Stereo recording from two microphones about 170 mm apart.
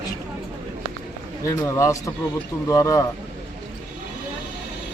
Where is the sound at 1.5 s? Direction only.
20° left (ahead or behind).